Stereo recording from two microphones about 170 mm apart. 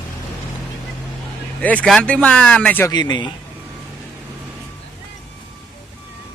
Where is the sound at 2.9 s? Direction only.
25° left (ahead or behind).